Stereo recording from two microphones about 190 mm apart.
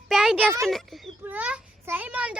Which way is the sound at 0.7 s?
Centre (ahead or behind).